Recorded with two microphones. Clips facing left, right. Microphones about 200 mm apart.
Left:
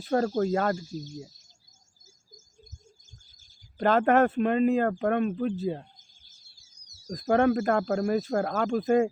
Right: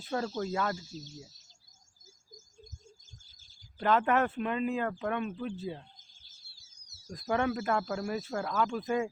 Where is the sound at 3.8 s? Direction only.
45° left (ahead or behind).